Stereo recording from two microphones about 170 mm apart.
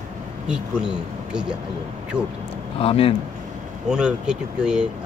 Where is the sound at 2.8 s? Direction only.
30° left (ahead or behind).